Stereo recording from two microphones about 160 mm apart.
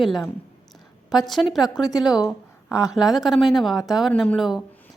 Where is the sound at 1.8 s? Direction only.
25° left (ahead or behind).